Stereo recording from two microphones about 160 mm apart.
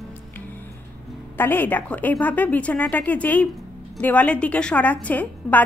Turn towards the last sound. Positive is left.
turn(degrees=10)  # may be behind; listen again after turning